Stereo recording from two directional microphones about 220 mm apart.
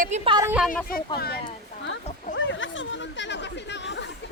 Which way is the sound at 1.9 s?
55° left (ahead or behind).